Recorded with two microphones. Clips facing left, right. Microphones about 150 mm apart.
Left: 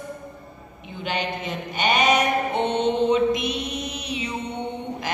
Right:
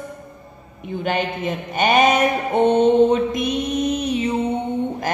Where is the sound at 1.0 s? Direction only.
50° right (ahead or behind).